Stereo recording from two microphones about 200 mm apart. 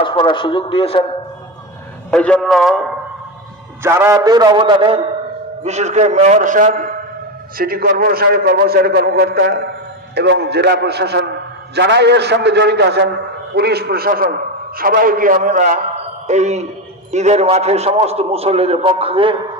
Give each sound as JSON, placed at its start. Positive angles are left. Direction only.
{"t": 0.0, "sound": "a man's voice", "side_deg": 25}
{"t": 2.0, "sound": "a man's voice", "side_deg": 5}
{"t": 3.8, "sound": "a man's voice", "side_deg": -10}